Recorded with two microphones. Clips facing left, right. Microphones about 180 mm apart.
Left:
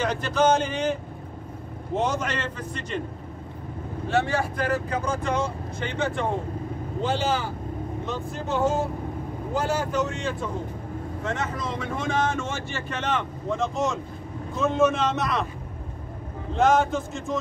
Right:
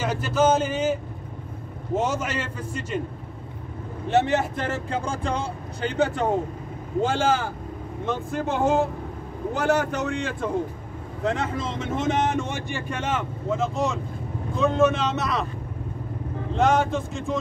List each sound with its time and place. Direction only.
0.0 s speech: 5° right (ahead or behind)
2.0 s speech: 10° right (ahead or behind)
4.1 s speech: 20° right (ahead or behind); by 7.5 s 50° right (ahead or behind)
8.1 s speech: 60° right (ahead or behind)
11.2 s speech: 30° right (ahead or behind); by 15.4 s centre (ahead or behind)
16.5 s speech: centre (ahead or behind)